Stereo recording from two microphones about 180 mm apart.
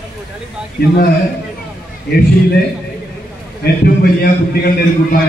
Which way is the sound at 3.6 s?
60° left (ahead or behind).